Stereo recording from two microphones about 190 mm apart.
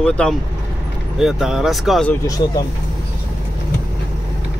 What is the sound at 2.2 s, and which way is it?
Speech, 20° left (ahead or behind).